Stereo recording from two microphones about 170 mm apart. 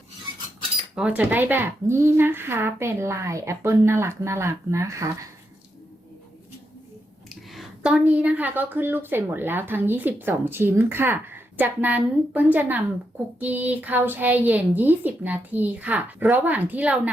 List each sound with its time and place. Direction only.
0.9 s a woman's voice: 5° right (ahead or behind)
7.3 s a woman's voice: centre (ahead or behind)